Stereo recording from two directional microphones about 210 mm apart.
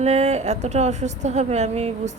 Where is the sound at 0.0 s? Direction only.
30° right (ahead or behind).